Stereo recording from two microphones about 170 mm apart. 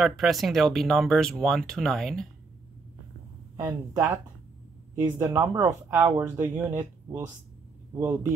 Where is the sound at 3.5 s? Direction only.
15° right (ahead or behind).